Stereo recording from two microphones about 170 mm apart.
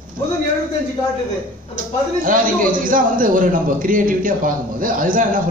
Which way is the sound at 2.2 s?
50° right (ahead or behind).